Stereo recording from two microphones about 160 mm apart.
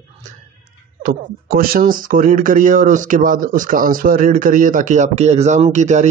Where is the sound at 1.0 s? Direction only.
65° right (ahead or behind).